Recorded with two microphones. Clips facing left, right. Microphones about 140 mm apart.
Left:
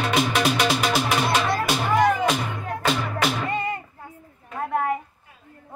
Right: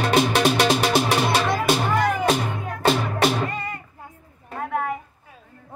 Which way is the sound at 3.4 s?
20° left (ahead or behind).